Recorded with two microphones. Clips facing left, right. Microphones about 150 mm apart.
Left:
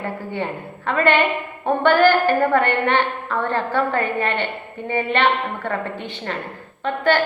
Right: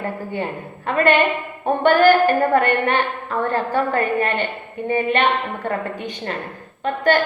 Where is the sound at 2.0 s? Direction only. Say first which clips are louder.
Right 2 dB; 15° right (ahead or behind).